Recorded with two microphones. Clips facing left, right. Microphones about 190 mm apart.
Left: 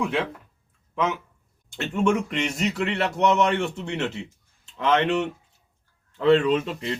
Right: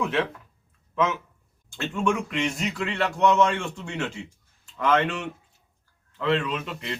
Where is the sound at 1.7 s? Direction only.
25° left (ahead or behind).